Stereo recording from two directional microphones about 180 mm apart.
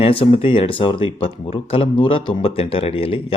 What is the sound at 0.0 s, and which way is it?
Speech, 30° left (ahead or behind).